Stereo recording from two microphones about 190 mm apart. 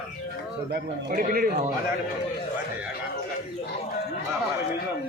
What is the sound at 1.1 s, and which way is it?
Speech, 50° right (ahead or behind).